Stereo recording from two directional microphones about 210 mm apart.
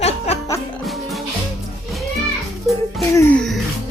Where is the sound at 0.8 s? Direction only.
Centre (ahead or behind).